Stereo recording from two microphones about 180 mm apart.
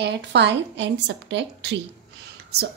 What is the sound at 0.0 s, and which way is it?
A woman's voice, 75° right (ahead or behind).